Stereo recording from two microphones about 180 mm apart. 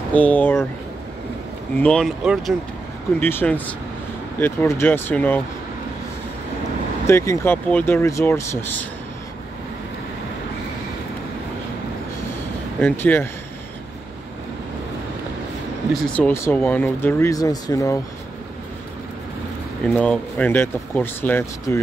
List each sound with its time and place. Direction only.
0.1 s speech: 10° left (ahead or behind)
1.8 s speech: 5° left (ahead or behind)
3.2 s speech: 10° left (ahead or behind)
7.1 s speech: 15° left (ahead or behind)
12.8 s speech: 10° left (ahead or behind)
15.9 s speech: 10° left (ahead or behind)
19.9 s speech: 5° left (ahead or behind)